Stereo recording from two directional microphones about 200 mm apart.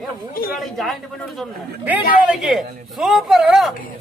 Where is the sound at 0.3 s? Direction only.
45° left (ahead or behind).